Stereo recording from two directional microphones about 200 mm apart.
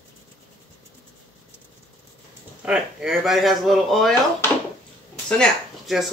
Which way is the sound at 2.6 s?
5° right (ahead or behind).